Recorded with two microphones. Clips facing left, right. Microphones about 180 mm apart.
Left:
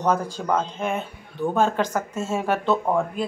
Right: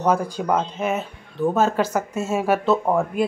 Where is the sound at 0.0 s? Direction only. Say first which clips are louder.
Right 2 dB; 10° right (ahead or behind).